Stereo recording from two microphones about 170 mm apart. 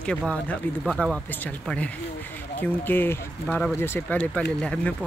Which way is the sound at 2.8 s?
10° left (ahead or behind).